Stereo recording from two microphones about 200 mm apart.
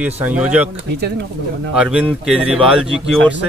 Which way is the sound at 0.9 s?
55° right (ahead or behind).